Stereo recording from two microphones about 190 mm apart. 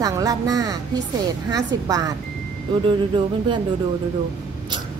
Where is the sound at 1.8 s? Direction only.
20° right (ahead or behind).